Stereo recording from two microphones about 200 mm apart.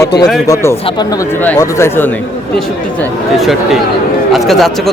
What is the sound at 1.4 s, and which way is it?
Speech, 10° left (ahead or behind).